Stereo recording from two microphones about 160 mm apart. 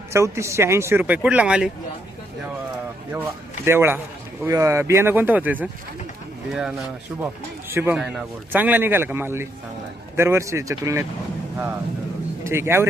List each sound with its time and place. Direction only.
0.1 s speech: 15° right (ahead or behind)
3.7 s speech: 15° right (ahead or behind)
12.5 s speech: 15° right (ahead or behind)